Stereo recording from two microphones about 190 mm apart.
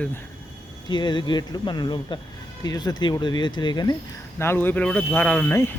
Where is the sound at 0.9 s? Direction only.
25° left (ahead or behind).